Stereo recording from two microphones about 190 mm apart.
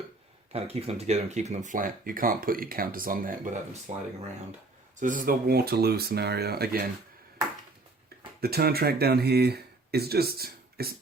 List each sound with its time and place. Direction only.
0.5 s speech: 30° right (ahead or behind); by 6.8 s 55° right (ahead or behind)
8.4 s speech: 55° right (ahead or behind)